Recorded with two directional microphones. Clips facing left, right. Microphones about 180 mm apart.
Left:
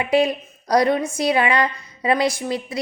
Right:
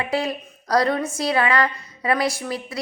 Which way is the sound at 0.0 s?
20° left (ahead or behind).